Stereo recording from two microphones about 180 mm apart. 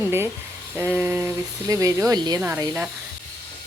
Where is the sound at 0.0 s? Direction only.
15° right (ahead or behind).